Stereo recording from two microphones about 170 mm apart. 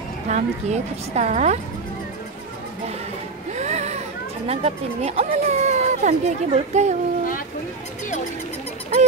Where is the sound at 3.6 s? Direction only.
40° right (ahead or behind).